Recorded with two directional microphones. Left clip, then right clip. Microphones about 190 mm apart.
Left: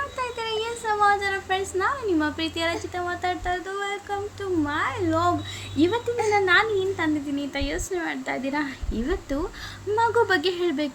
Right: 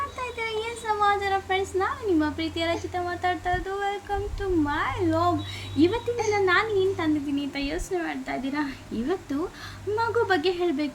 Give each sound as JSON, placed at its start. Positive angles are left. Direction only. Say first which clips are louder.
{"t": 0.3, "sound": "a woman's voice", "louder": "left 2 dB", "side_deg": 25}